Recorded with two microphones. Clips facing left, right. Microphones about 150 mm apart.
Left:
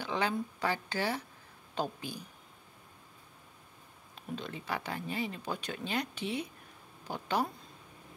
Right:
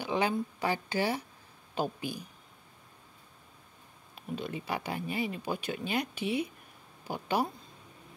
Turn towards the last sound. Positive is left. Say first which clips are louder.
# right 2 dB
turn(degrees=-10)  # may be behind; listen again after turning